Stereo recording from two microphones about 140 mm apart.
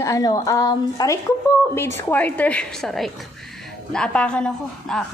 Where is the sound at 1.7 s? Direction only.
15° left (ahead or behind).